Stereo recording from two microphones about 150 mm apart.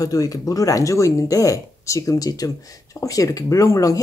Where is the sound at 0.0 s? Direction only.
25° left (ahead or behind).